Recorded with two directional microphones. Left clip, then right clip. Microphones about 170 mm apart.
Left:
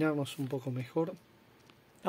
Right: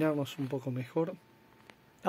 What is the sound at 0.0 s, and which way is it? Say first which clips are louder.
Speech: right 1 dB; 5° right (ahead or behind).